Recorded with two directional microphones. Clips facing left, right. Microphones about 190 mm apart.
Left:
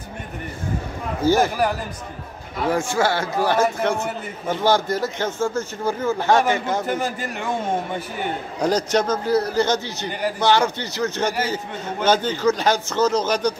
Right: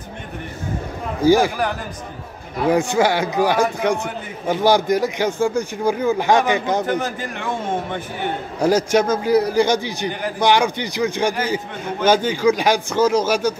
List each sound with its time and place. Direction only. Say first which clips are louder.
1.2 s a man's voice: right 3 dB; 10° right (ahead or behind)
2.6 s a man's voice: right 4 dB; 15° right (ahead or behind)
8.5 s a man's voice: right 4 dB; 10° right (ahead or behind)